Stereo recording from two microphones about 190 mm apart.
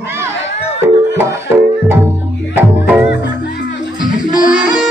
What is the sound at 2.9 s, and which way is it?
Music, 5° right (ahead or behind).